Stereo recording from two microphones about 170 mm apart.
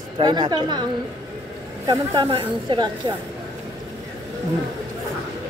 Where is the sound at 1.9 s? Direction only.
30° right (ahead or behind).